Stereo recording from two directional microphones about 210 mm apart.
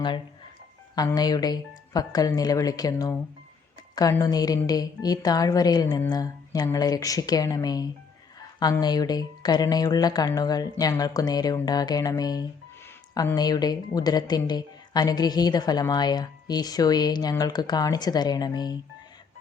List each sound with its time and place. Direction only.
0.9 s a woman's voice: 15° left (ahead or behind)